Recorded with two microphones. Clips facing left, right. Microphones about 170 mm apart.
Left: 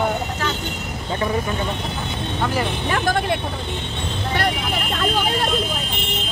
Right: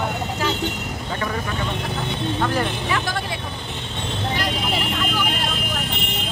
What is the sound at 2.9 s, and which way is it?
Speech, 50° left (ahead or behind).